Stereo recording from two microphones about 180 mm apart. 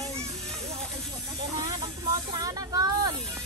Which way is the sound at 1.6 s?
20° right (ahead or behind).